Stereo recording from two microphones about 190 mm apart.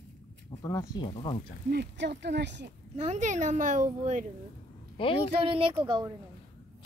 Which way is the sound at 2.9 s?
35° right (ahead or behind).